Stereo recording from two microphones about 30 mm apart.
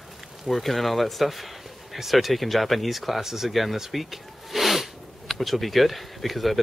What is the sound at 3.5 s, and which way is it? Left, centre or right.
A man's voice, centre.